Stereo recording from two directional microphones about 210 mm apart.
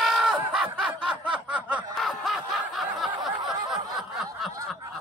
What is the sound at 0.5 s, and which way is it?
Snicker, centre (ahead or behind).